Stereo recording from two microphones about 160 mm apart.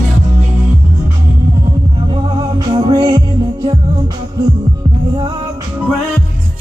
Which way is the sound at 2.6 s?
30° right (ahead or behind).